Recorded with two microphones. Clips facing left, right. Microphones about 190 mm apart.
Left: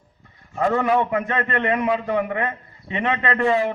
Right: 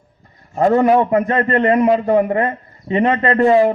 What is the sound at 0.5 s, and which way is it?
A man's voice, 40° right (ahead or behind).